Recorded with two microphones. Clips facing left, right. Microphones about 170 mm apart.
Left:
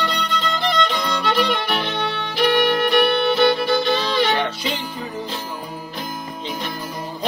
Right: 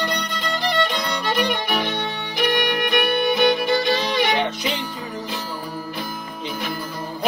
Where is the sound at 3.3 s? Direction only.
15° right (ahead or behind).